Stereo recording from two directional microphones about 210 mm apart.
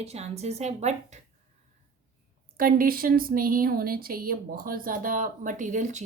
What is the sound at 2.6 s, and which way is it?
Speech, 45° right (ahead or behind).